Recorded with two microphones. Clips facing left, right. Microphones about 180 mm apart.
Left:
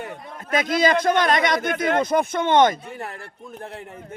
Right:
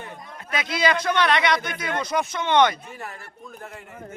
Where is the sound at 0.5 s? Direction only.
45° left (ahead or behind).